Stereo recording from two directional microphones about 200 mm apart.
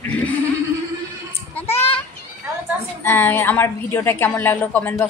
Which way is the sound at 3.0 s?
10° left (ahead or behind).